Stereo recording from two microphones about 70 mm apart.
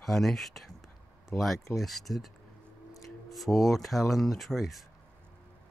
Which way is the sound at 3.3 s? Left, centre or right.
Centre.